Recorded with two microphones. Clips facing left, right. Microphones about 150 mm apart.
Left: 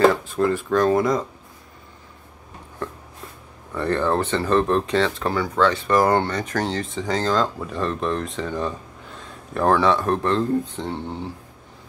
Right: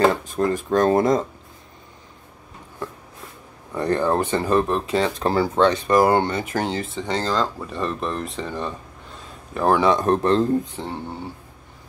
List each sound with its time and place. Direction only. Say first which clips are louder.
0.4 s speech: right 1 dB; 40° right (ahead or behind)
3.7 s speech: right 1 dB; 15° right (ahead or behind)